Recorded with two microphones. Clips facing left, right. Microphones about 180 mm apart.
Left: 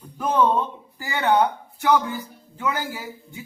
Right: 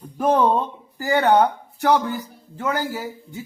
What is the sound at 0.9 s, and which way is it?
Speech, 45° right (ahead or behind).